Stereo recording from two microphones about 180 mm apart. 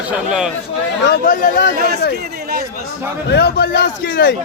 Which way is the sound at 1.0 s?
50° left (ahead or behind).